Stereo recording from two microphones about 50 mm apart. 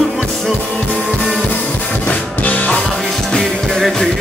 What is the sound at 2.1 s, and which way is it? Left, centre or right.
Music, left.